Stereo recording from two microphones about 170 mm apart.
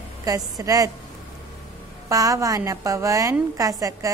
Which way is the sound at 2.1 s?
20° right (ahead or behind).